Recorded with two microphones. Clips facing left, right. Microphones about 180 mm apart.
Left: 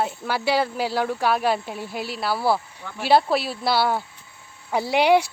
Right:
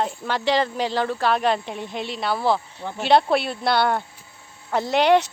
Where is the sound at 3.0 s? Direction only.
5° left (ahead or behind).